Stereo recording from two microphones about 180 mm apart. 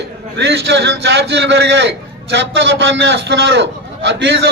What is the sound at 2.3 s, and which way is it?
A man's voice, 90° right.